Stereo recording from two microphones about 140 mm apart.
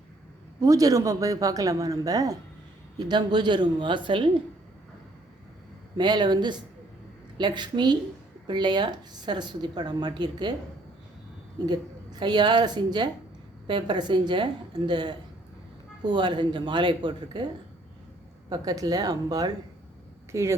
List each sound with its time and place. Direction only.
0.6 s a woman's voice: 25° right (ahead or behind)
6.0 s a woman's voice: 30° right (ahead or behind)
11.6 s a woman's voice: 30° right (ahead or behind)